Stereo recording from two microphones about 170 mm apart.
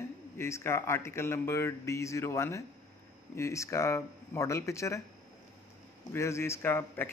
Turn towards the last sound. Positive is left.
turn(degrees=10)  # may be behind; listen again after turning